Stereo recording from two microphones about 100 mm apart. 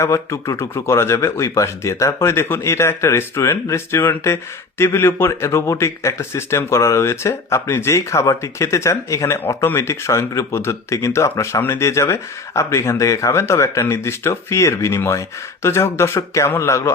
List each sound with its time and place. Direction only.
0.0 s a man's voice: 30° left (ahead or behind)